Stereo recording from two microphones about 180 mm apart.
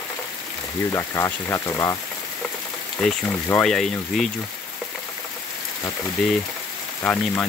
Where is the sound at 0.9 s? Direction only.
15° left (ahead or behind).